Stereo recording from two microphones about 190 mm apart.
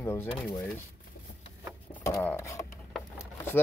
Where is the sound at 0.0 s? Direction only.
15° left (ahead or behind).